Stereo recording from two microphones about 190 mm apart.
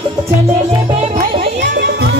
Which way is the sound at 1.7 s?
65° right (ahead or behind).